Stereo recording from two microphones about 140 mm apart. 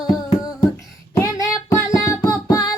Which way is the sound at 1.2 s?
25° left (ahead or behind).